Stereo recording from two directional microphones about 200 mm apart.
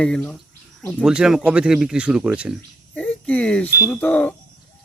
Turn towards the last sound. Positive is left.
turn(degrees=5)  # may be behind; listen again after turning